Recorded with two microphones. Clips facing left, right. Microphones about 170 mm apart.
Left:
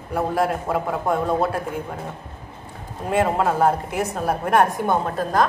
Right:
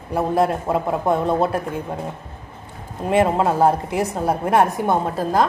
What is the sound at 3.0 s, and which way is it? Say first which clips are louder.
A woman's voice: right 3 dB; 25° right (ahead or behind).